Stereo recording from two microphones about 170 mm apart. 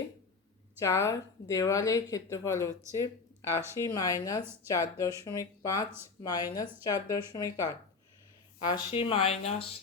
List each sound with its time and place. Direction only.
0.8 s speech: 15° left (ahead or behind)
3.8 s speech: 20° left (ahead or behind)
8.7 s speech: 30° left (ahead or behind)